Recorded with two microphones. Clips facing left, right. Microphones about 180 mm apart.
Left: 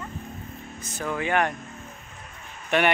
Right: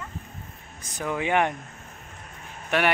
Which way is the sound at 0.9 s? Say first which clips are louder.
Right 1 dB; 15° right (ahead or behind).